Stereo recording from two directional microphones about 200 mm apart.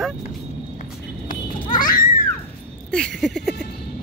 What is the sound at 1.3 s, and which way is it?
Children playing, 40° left (ahead or behind).